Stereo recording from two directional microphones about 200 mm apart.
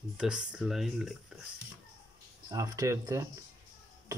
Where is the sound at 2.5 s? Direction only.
15° right (ahead or behind).